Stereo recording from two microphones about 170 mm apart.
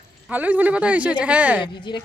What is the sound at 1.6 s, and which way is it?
Speech, 25° left (ahead or behind).